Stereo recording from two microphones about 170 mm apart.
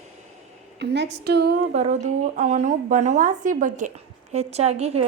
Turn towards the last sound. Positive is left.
turn(degrees=-40)  # may be behind; listen again after turning